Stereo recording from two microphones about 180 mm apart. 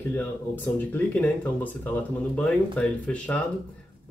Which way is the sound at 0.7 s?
10° left (ahead or behind).